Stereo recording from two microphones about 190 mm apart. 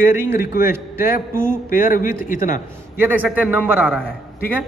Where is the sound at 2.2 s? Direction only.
45° left (ahead or behind).